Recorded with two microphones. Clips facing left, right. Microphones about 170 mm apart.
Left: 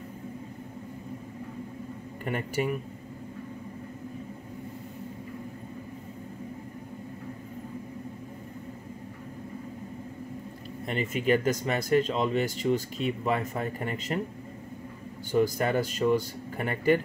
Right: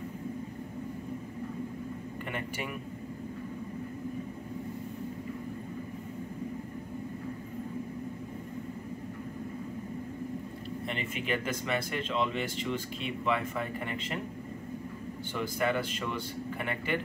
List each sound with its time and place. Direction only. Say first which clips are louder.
2.2 s speech: left 9 dB; 40° left (ahead or behind)
10.9 s speech: left 9 dB; 40° left (ahead or behind)
15.3 s speech: left 6 dB; 40° left (ahead or behind)